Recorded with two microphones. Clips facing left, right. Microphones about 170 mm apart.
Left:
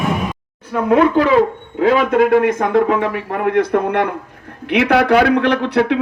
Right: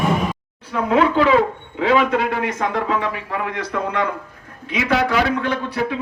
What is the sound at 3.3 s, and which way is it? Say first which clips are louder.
Speech: left 12 dB; 55° left (ahead or behind).